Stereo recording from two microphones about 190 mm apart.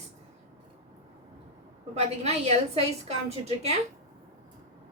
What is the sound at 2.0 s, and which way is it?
A woman's voice, 35° right (ahead or behind).